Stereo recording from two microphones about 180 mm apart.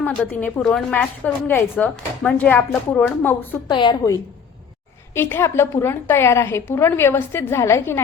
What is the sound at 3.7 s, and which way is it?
A woman's voice, 25° left (ahead or behind).